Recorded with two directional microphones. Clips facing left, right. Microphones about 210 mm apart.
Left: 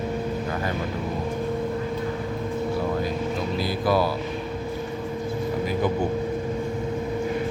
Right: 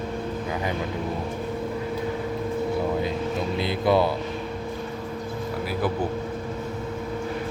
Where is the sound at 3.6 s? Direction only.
25° right (ahead or behind).